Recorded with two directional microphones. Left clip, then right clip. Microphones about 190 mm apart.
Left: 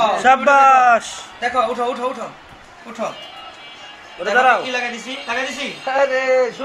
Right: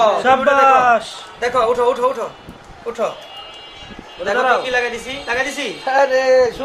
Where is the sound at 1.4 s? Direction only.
40° right (ahead or behind).